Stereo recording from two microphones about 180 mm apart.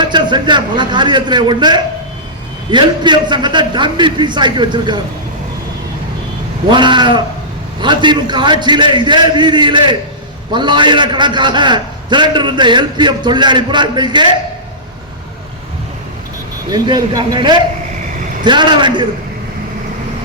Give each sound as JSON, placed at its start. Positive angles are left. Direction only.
{"t": 0.0, "sound": "a man's voice", "side_deg": -25}
{"t": 6.7, "sound": "a man's voice", "side_deg": -25}
{"t": 16.7, "sound": "a man's voice", "side_deg": -25}